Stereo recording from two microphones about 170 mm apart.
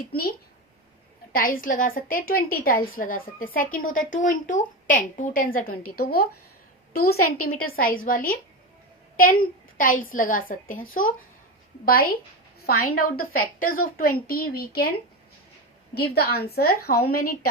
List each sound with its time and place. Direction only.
1.3 s a woman's voice: 55° left (ahead or behind)
12.6 s a woman's voice: 60° left (ahead or behind)
16.0 s a woman's voice: 70° left (ahead or behind)